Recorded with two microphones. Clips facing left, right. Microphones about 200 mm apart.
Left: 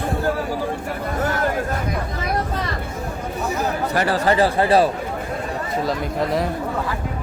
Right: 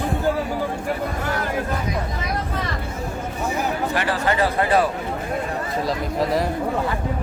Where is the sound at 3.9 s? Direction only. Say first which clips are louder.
Left 3 dB; 40° left (ahead or behind).